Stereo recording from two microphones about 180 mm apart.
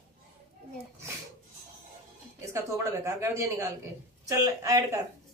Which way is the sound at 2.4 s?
15° right (ahead or behind).